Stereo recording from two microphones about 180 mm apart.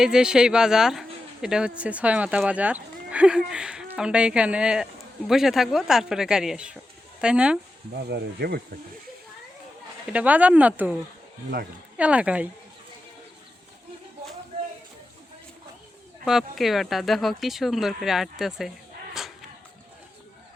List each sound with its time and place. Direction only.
0.0 s speech: 5° right (ahead or behind)
7.9 s speech: 65° right (ahead or behind)
10.1 s speech: 5° right (ahead or behind)
11.9 s speech: 5° right (ahead or behind)
16.2 s speech: centre (ahead or behind)
19.1 s a sound: centre (ahead or behind)